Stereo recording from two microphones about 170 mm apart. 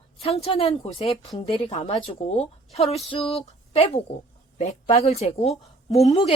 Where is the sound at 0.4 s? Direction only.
35° left (ahead or behind).